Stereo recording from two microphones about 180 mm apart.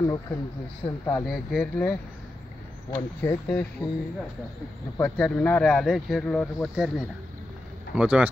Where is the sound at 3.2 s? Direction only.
10° left (ahead or behind).